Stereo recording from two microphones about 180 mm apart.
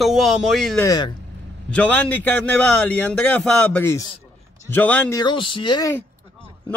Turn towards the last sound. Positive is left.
turn(degrees=20)  # may be behind; listen again after turning